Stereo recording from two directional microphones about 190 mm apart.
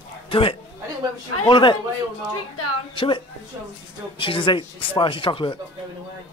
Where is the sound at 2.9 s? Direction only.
25° left (ahead or behind).